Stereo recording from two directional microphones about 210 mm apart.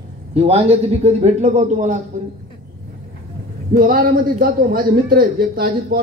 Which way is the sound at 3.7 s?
45° right (ahead or behind).